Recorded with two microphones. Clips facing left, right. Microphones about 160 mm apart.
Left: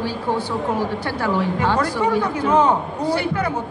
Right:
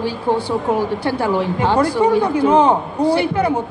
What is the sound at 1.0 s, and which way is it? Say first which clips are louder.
Speech: right 3 dB; 30° right (ahead or behind).